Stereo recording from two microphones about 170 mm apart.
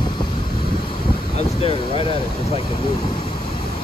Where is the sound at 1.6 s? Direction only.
30° left (ahead or behind).